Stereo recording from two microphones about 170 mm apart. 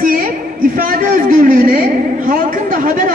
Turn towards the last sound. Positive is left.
turn(degrees=-50)  # may be behind; listen again after turning